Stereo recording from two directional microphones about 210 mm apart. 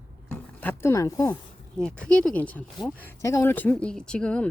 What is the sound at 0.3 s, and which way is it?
Speech, 10° left (ahead or behind).